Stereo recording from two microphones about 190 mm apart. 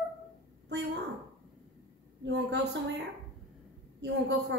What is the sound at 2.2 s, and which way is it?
Speech, 65° right (ahead or behind).